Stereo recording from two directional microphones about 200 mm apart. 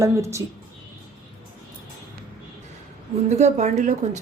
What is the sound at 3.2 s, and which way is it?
Speech, 35° right (ahead or behind).